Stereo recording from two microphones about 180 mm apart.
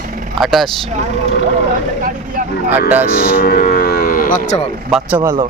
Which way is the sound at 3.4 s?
55° left (ahead or behind).